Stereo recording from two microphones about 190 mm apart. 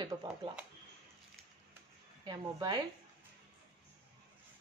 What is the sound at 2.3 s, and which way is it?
Speech, 20° right (ahead or behind).